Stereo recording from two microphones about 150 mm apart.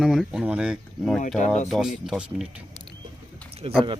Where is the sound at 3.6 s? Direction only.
35° right (ahead or behind).